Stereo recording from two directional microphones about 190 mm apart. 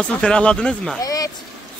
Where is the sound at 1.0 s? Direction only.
20° left (ahead or behind).